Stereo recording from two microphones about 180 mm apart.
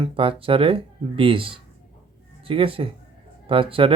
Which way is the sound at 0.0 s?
30° right (ahead or behind).